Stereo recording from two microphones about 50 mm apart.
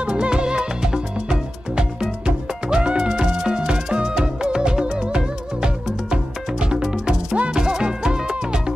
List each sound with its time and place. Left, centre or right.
0.0 s music: centre